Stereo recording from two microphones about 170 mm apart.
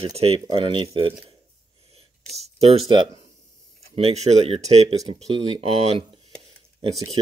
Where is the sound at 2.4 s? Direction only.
40° right (ahead or behind).